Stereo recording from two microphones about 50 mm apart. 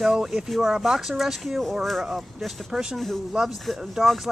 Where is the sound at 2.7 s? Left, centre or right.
Centre.